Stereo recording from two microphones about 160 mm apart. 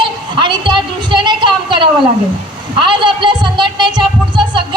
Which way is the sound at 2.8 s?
30° right (ahead or behind).